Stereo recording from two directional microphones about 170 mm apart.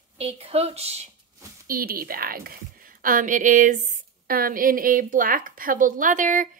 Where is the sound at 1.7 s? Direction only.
60° right (ahead or behind).